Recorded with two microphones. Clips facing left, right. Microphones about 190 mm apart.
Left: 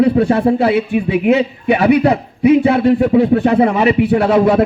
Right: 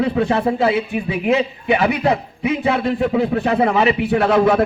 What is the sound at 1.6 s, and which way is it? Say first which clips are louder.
Speech: left 8 dB; 45° left (ahead or behind).